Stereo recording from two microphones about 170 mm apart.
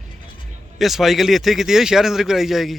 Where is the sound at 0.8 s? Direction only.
Centre (ahead or behind).